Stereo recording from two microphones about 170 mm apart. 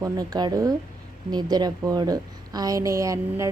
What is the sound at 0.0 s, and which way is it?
A woman's voice, 25° right (ahead or behind).